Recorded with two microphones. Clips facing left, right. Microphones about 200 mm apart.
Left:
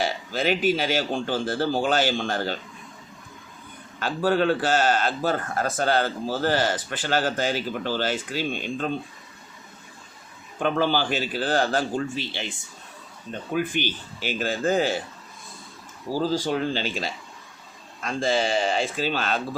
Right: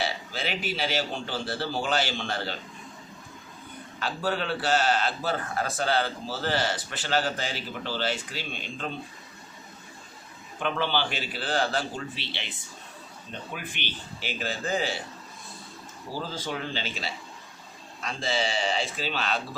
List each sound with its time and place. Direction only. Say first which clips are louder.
0.0 s a man's voice: left 6 dB; 45° left (ahead or behind)
4.0 s a man's voice: left 8 dB; 45° left (ahead or behind)
10.6 s a man's voice: left 5 dB; 40° left (ahead or behind)
13.5 s a man's voice: left 14 dB; 45° left (ahead or behind)
16.1 s a man's voice: left 9 dB; 45° left (ahead or behind)